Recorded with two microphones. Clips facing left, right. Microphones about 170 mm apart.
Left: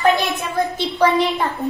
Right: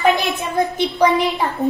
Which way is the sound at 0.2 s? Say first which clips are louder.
Right 1 dB; 20° right (ahead or behind).